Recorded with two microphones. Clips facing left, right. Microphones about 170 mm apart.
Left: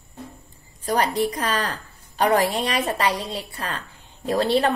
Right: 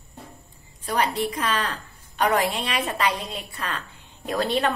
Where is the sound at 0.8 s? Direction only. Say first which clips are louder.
Left 3 dB; 35° left (ahead or behind).